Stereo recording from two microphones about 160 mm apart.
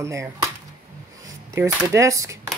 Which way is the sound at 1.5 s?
15° right (ahead or behind).